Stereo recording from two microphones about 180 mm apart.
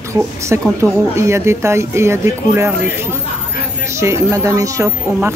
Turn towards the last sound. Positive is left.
turn(degrees=-15)  # may be behind; listen again after turning